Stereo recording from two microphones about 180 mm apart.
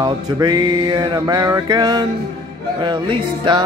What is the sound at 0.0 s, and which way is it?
Mantra, 20° right (ahead or behind).